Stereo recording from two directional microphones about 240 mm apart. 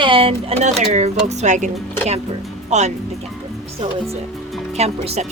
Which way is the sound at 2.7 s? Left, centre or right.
Right.